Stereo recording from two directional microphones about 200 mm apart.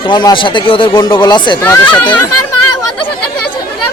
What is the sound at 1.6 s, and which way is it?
Speech, 10° left (ahead or behind).